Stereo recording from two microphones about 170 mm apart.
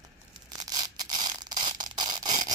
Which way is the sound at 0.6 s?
20° right (ahead or behind).